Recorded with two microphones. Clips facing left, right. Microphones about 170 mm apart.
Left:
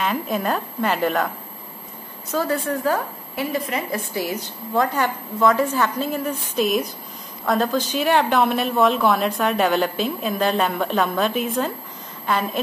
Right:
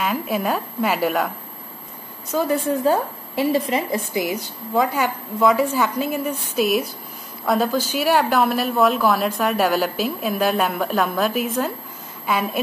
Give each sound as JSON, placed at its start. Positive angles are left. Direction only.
{"t": 0.0, "sound": "speech", "side_deg": -5}
{"t": 2.3, "sound": "a woman's voice", "side_deg": -20}
{"t": 4.1, "sound": "a woman's voice", "side_deg": -15}